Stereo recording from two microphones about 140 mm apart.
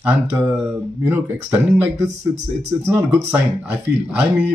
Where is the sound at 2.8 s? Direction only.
10° right (ahead or behind).